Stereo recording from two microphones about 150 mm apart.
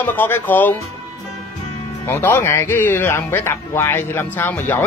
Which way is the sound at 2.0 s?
15° left (ahead or behind).